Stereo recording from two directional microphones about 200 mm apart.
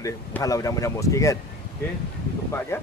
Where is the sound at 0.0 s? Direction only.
15° left (ahead or behind).